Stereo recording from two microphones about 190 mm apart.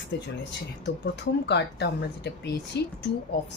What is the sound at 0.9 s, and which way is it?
Speech, 65° left (ahead or behind).